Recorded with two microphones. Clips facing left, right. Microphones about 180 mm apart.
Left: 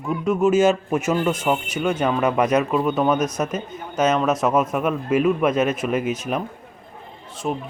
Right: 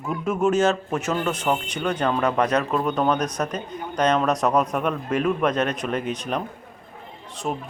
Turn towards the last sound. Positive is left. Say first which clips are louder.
# left 2 dB
turn(degrees=0)  # may be behind; listen again after turning